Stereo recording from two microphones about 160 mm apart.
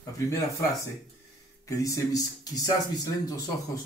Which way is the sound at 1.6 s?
20° left (ahead or behind).